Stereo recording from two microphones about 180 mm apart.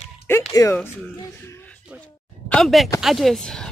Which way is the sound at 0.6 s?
20° left (ahead or behind).